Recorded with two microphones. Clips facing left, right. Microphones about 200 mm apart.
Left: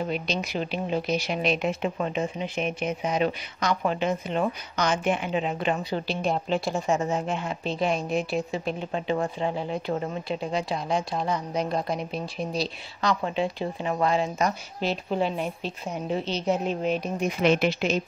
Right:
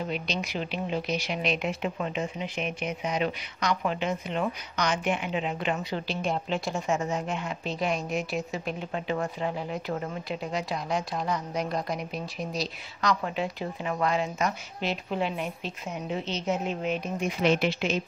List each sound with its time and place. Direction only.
0.1 s speech: 35° left (ahead or behind)
17.4 s speech: 55° left (ahead or behind)